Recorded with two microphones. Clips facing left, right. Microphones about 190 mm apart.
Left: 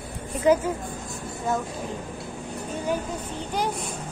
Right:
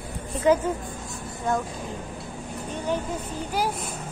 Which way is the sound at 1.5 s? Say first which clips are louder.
Right 1 dB; 5° left (ahead or behind).